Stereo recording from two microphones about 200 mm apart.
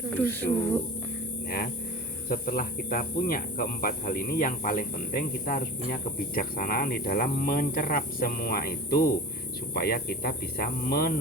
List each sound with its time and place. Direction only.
0.1 s speech: 10° left (ahead or behind)
1.5 s speech: 50° left (ahead or behind)